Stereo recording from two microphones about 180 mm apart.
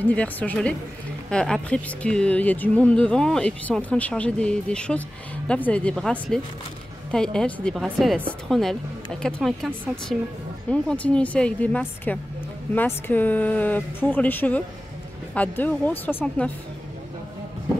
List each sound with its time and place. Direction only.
0.0 s speech: 10° left (ahead or behind)
10.7 s speech: 5° left (ahead or behind)